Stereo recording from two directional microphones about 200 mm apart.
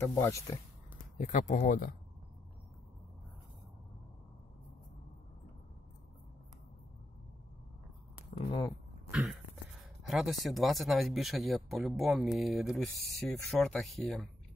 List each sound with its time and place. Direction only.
0.0 s speech: 15° left (ahead or behind)
1.2 s speech: 40° left (ahead or behind)
8.4 s speech: 20° left (ahead or behind)
9.1 s speech: centre (ahead or behind)